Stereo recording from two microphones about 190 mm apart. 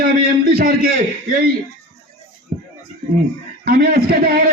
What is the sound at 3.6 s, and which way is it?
Speech, 50° right (ahead or behind).